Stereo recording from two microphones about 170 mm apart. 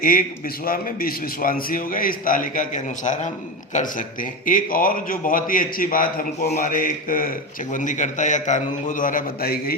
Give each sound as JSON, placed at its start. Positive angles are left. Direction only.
{"t": 0.0, "sound": "a man's voice", "side_deg": 55}